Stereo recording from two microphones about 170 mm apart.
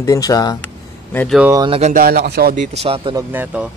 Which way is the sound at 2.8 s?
35° right (ahead or behind).